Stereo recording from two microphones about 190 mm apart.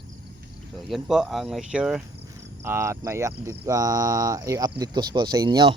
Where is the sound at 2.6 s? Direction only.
15° right (ahead or behind).